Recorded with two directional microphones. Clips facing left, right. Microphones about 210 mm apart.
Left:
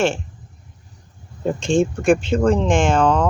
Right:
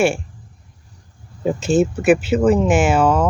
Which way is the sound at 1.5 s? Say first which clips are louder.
Right 2 dB; 5° right (ahead or behind).